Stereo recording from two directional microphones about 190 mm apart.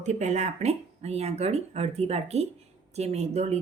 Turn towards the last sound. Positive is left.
turn(degrees=-35)  # may be behind; listen again after turning